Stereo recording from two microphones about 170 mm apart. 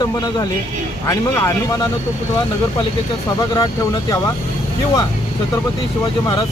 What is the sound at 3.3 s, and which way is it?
Speech, 20° left (ahead or behind).